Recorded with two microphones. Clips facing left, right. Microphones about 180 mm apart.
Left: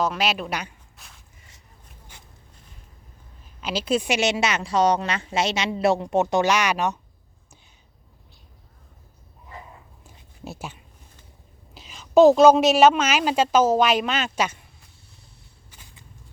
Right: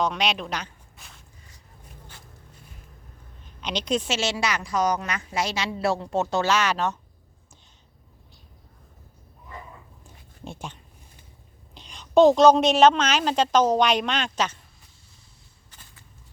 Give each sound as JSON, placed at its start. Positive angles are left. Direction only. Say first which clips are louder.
{"t": 0.0, "sound": "a woman's voice", "louder": "left 1 dB", "side_deg": 5}
{"t": 0.9, "sound": "walk", "louder": "right 1 dB", "side_deg": 0}
{"t": 3.4, "sound": "a woman's voice", "louder": "left 2 dB", "side_deg": 5}
{"t": 10.0, "sound": "a sound", "louder": "left 3 dB", "side_deg": 5}
{"t": 11.7, "sound": "a woman's voice", "louder": "left 2 dB", "side_deg": 5}
{"t": 15.7, "sound": "walk", "louder": "left 2 dB", "side_deg": 15}